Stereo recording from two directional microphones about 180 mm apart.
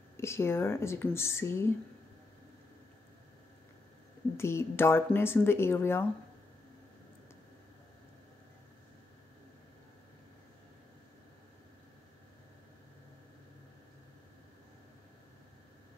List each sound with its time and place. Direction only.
0.2 s speech: 15° left (ahead or behind)
4.4 s speech: 15° left (ahead or behind)